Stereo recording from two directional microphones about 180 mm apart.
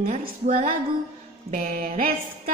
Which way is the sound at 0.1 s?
50° right (ahead or behind).